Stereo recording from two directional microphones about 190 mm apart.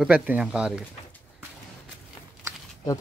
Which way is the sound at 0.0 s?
5° right (ahead or behind).